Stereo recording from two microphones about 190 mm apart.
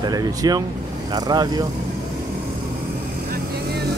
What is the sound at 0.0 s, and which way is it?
Speech, 20° right (ahead or behind).